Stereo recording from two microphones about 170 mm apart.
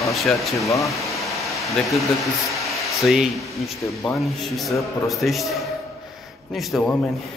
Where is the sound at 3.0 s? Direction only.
Centre (ahead or behind).